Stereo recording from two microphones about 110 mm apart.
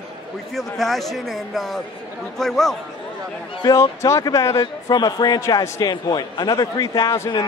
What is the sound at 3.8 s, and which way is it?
Speech, 25° left (ahead or behind).